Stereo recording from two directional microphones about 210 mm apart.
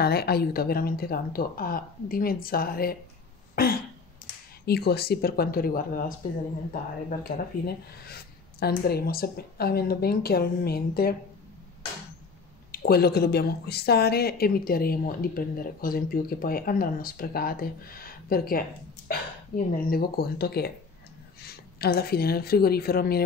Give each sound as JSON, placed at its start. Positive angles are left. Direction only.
{"t": 0.0, "sound": "speech", "side_deg": 50}
{"t": 3.5, "sound": "throat clearing", "side_deg": 45}
{"t": 4.6, "sound": "speech", "side_deg": 50}
{"t": 12.7, "sound": "a woman's voice", "side_deg": 45}